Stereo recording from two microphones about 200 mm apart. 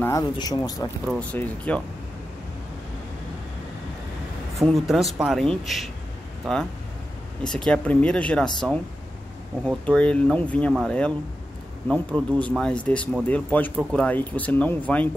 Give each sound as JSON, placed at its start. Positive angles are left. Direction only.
{"t": 0.0, "sound": "speech", "side_deg": 15}
{"t": 1.0, "sound": "speech", "side_deg": 5}
{"t": 4.6, "sound": "speech", "side_deg": 0}
{"t": 9.7, "sound": "speech", "side_deg": 5}